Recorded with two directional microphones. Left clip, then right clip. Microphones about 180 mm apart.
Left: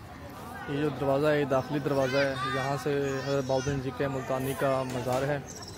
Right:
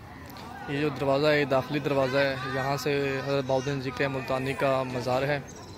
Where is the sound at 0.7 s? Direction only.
Centre (ahead or behind).